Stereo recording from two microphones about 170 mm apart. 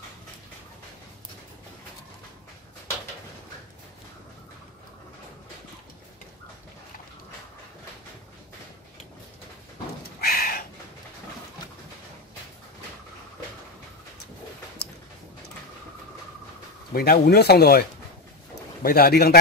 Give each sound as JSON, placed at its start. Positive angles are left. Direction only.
{"t": 10.2, "sound": "bird", "side_deg": 60}
{"t": 16.9, "sound": "speech", "side_deg": 65}